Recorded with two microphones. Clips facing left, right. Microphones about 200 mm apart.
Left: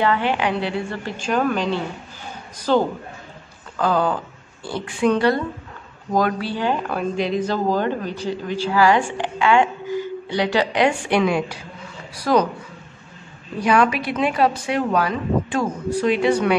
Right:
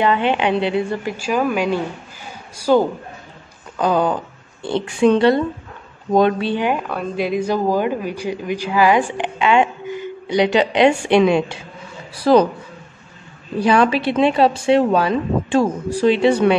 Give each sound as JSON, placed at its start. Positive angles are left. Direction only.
{"t": 0.0, "sound": "speech", "side_deg": -20}
{"t": 6.8, "sound": "speech", "side_deg": 0}
{"t": 13.6, "sound": "speech", "side_deg": -30}